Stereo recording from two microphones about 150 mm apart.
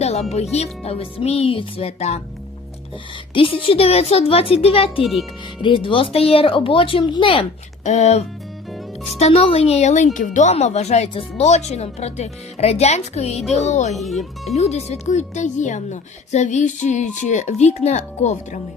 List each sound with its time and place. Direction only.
0.0 s speech: 45° left (ahead or behind)
3.3 s speech: 35° left (ahead or behind)
7.9 s speech: 50° left (ahead or behind)
13.9 s speech: centre (ahead or behind)
14.4 s speech: 45° left (ahead or behind)